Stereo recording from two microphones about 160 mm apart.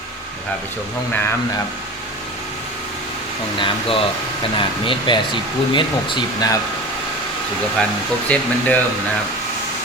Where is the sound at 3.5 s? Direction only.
35° left (ahead or behind).